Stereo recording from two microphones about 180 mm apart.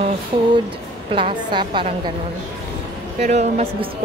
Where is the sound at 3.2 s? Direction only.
40° right (ahead or behind).